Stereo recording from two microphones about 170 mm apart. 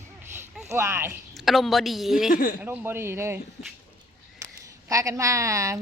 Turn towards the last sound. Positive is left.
turn(degrees=-20)  # may be behind; listen again after turning